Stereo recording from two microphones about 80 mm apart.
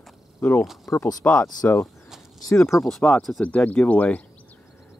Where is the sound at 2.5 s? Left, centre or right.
Left.